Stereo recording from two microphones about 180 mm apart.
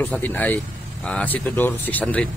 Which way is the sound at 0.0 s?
10° left (ahead or behind).